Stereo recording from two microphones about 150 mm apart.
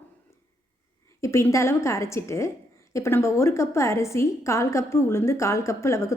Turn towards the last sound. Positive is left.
turn(degrees=20)  # may be behind; listen again after turning